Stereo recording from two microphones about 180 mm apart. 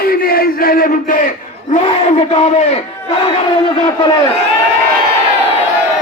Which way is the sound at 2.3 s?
35° left (ahead or behind).